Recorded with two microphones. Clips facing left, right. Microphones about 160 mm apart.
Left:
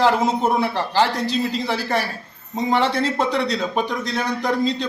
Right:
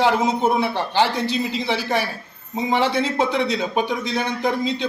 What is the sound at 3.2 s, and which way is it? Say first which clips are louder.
Speech: even; 35° left (ahead or behind).